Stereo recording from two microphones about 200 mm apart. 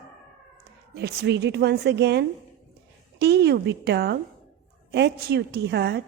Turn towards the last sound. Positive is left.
turn(degrees=-55)  # may be behind; listen again after turning